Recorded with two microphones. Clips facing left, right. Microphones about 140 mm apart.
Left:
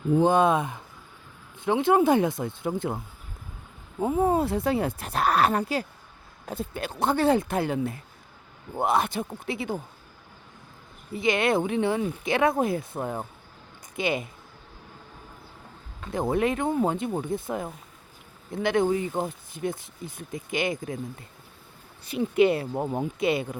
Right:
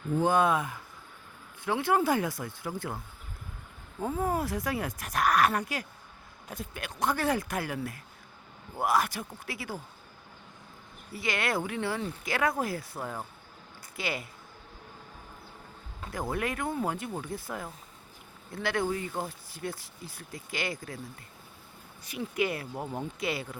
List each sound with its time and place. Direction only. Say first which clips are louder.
0.1 s speech: left 5 dB; 20° left (ahead or behind)
4.0 s speech: left 7 dB; 20° left (ahead or behind)
11.1 s speech: left 8 dB; 20° left (ahead or behind)
16.1 s speech: left 8 dB; 25° left (ahead or behind)